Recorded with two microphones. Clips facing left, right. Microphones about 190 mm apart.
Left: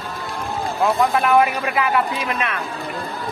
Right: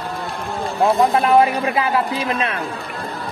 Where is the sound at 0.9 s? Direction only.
30° right (ahead or behind).